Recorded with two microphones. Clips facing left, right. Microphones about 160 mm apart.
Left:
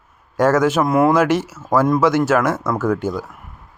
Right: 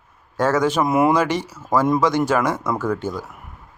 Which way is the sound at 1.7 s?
10° right (ahead or behind).